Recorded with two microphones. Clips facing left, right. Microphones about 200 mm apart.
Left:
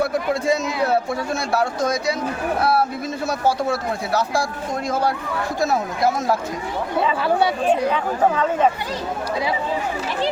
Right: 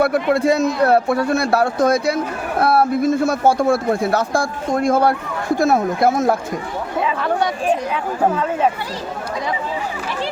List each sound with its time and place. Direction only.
0.0 s a man's voice: 65° right (ahead or behind)
7.0 s speech: 5° left (ahead or behind)
7.7 s speech: 10° right (ahead or behind)